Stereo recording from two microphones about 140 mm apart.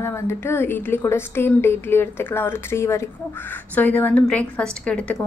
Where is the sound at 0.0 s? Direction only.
20° left (ahead or behind).